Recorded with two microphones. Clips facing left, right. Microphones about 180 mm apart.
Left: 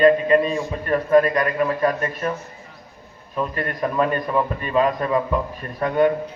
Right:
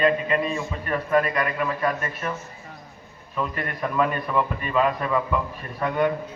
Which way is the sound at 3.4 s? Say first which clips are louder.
Left 4 dB; 40° left (ahead or behind).